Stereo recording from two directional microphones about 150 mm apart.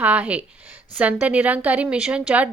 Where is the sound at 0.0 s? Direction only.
10° right (ahead or behind).